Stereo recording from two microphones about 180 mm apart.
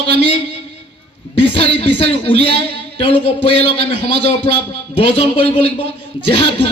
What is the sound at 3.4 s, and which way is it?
A woman's voice, 30° left (ahead or behind).